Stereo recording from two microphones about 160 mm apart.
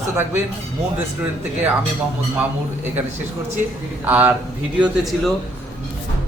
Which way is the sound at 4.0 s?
10° right (ahead or behind).